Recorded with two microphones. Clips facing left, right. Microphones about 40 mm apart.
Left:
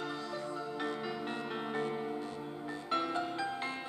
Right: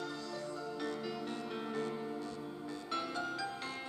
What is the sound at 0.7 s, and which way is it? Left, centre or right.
Music, left.